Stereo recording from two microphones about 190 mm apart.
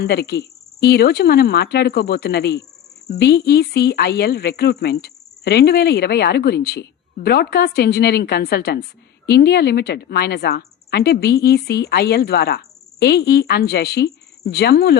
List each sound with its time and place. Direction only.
0.0 s speech: 55° left (ahead or behind)